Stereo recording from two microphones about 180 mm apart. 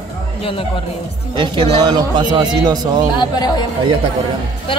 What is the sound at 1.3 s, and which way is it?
A man's voice, 25° right (ahead or behind).